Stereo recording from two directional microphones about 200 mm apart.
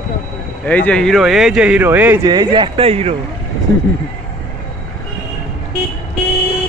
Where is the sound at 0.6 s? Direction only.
5° left (ahead or behind); by 2.1 s 10° right (ahead or behind).